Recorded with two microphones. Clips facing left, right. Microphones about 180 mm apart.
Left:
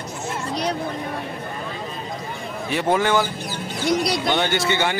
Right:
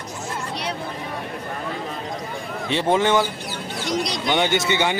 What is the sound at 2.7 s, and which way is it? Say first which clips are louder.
Speech: right 1 dB; 25° right (ahead or behind).